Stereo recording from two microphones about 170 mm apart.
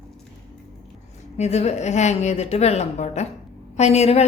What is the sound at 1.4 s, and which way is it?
A woman's voice, 40° left (ahead or behind).